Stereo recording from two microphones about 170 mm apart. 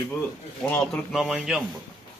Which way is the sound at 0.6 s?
15° left (ahead or behind).